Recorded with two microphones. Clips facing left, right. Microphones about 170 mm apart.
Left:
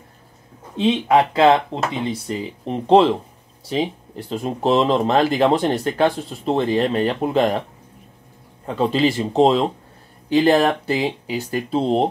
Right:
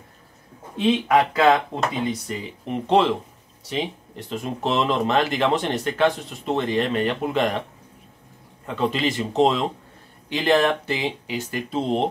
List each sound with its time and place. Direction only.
0.7 s speech: 25° left (ahead or behind)
4.3 s speech: 35° left (ahead or behind)
8.6 s speech: 35° left (ahead or behind)